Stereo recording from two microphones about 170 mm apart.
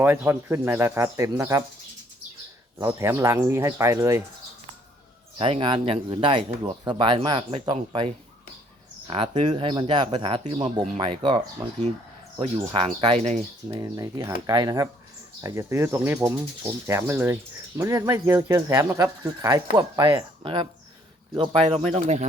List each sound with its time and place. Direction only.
0.0 s speech: 15° right (ahead or behind)
2.8 s speech: 15° right (ahead or behind)
5.4 s speech: 30° right (ahead or behind)
12.5 s speech: 30° right (ahead or behind)
13.7 s speech: 20° right (ahead or behind)
20.4 s speech: 30° right (ahead or behind)